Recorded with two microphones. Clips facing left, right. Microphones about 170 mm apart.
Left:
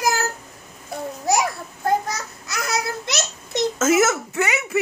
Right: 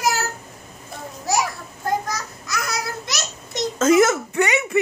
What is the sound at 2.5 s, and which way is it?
Babbling, 25° left (ahead or behind).